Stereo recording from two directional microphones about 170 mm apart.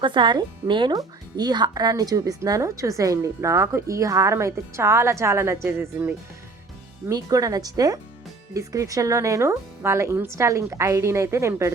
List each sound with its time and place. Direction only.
0.0 s speech: 30° right (ahead or behind)